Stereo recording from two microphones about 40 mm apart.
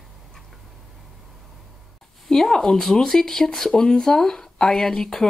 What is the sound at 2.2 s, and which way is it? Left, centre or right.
Speech, centre.